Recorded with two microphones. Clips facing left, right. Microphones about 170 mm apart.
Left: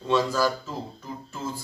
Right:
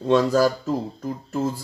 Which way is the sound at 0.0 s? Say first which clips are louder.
Right 6 dB; 45° right (ahead or behind).